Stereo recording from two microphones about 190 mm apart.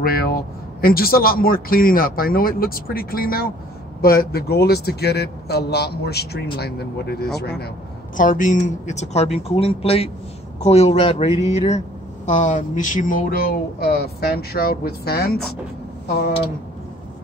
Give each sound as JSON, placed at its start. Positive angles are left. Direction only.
{"t": 0.0, "sound": "a man's voice", "side_deg": 50}
{"t": 8.2, "sound": "a man's voice", "side_deg": 45}